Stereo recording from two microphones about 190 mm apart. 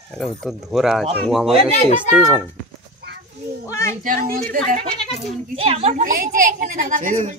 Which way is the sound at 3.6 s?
15° left (ahead or behind).